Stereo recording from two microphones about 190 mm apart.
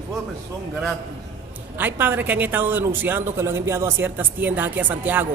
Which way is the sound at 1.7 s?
10° right (ahead or behind).